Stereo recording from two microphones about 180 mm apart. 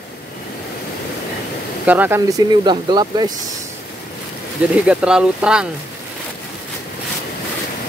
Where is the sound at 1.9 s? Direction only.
10° right (ahead or behind).